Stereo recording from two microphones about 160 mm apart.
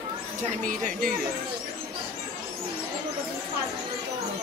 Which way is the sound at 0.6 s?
60° right (ahead or behind).